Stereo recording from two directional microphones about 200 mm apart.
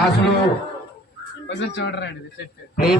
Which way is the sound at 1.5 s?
60° left (ahead or behind).